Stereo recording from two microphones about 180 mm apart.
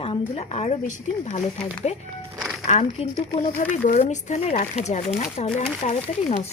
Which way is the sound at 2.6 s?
35° left (ahead or behind).